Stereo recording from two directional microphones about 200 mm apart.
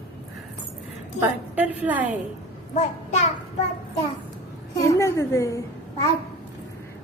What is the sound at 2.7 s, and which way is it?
Child singing, 35° left (ahead or behind).